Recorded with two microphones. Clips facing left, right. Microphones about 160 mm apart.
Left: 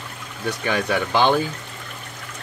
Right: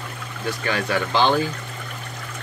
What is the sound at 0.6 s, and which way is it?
Speech, 15° left (ahead or behind).